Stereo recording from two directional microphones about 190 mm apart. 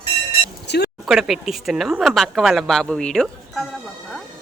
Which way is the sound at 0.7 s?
60° left (ahead or behind).